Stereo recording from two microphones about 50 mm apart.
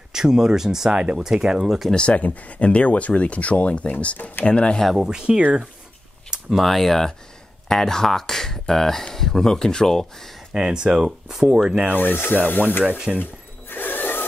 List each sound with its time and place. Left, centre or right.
0.1 s speech: centre
2.0 s speech: left
4.9 s speech: centre
6.5 s speech: centre
10.5 s speech: centre
12.0 s speech: left
12.8 s speech: right
13.2 s a sound: left